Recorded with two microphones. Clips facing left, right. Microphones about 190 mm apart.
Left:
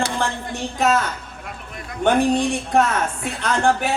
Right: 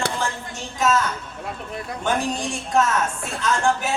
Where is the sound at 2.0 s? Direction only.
60° left (ahead or behind).